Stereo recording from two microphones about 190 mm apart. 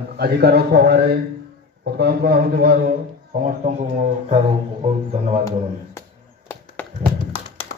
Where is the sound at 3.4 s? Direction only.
40° right (ahead or behind).